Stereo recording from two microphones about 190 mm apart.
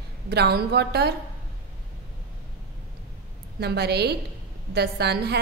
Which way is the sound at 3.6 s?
60° right (ahead or behind).